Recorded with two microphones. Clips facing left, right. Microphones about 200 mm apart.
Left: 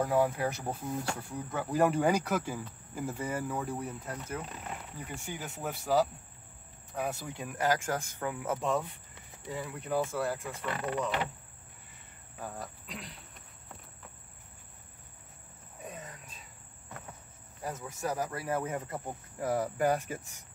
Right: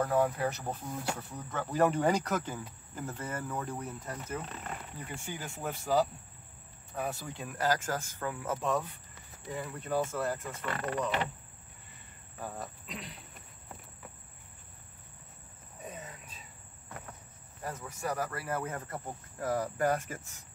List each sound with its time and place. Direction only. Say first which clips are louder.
0.0 s speech: left 1 dB; 10° left (ahead or behind)
12.4 s cricket: right 1 dB; centre (ahead or behind)
15.8 s cricket: even; centre (ahead or behind)
17.6 s speech: left 1 dB; 20° left (ahead or behind)